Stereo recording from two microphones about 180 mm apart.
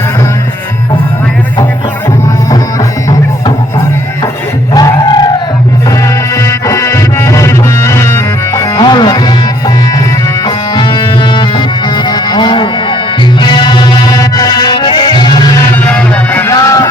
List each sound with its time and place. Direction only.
3.1 s music: 20° left (ahead or behind)
6.3 s music: 15° left (ahead or behind)
15.7 s music: 10° left (ahead or behind)